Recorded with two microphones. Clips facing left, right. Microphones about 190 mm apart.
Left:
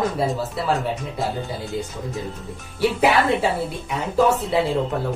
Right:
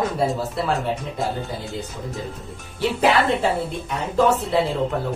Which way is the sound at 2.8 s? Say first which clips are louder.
Left 1 dB; 10° left (ahead or behind).